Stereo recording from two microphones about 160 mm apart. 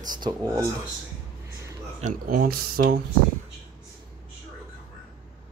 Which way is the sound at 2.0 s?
55° right (ahead or behind).